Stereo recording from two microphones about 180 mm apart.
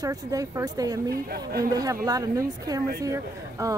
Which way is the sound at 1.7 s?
20° right (ahead or behind).